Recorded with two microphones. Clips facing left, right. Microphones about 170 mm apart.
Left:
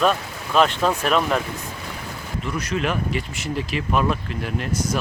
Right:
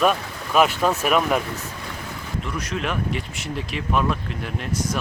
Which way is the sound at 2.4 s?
Centre (ahead or behind).